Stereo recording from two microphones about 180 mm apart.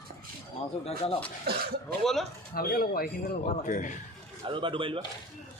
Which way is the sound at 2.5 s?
55° left (ahead or behind).